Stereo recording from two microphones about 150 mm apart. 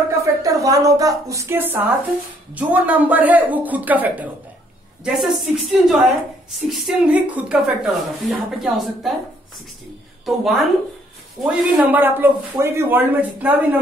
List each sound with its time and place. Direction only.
0.2 s a woman's voice: 20° right (ahead or behind); by 9.1 s centre (ahead or behind)
10.2 s speech: centre (ahead or behind)
11.4 s a man's voice: 10° right (ahead or behind)